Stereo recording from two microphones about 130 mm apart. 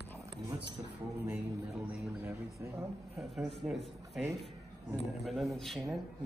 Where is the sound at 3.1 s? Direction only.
Centre (ahead or behind).